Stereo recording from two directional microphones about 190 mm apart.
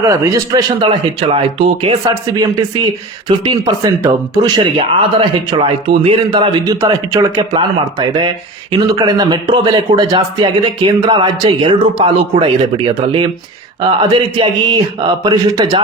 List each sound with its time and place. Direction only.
0.0 s a man's voice: 15° right (ahead or behind)
1.3 s a man's voice: 30° right (ahead or behind)